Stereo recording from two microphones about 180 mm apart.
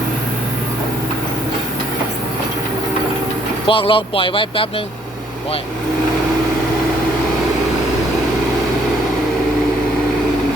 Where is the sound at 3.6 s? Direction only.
30° left (ahead or behind).